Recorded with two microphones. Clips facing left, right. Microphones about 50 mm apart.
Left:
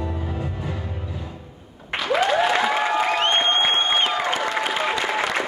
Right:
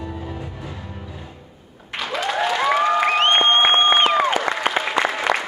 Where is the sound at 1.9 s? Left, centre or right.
Centre.